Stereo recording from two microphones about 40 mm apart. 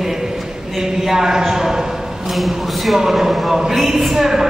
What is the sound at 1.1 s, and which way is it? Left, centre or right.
Speech, centre.